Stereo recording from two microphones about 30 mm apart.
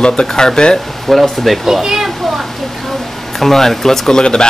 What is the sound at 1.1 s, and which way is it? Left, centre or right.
Speech, centre.